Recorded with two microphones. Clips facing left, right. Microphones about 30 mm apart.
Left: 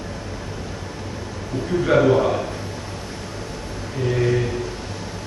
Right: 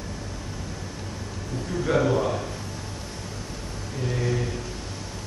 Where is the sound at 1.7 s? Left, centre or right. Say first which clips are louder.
Left 7 dB; left.